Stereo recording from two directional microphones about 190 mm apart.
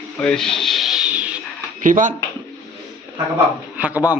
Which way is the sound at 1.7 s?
45° right (ahead or behind).